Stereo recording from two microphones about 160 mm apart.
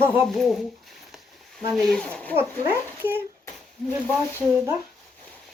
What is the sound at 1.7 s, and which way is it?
Speech, centre (ahead or behind).